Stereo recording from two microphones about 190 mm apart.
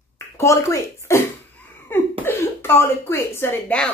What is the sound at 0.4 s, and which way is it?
A woman's voice, 15° left (ahead or behind).